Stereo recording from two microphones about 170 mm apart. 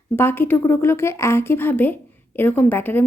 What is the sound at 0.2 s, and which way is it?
Speech, 15° left (ahead or behind).